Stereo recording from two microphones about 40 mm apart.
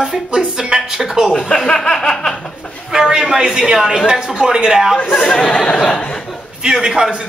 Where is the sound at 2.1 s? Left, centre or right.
Centre.